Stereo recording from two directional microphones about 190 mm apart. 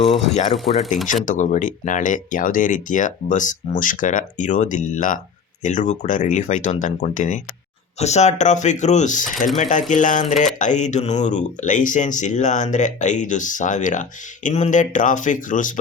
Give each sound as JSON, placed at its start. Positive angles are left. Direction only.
{"t": 0.1, "sound": "speech", "side_deg": 0}
{"t": 1.0, "sound": "speech", "side_deg": 40}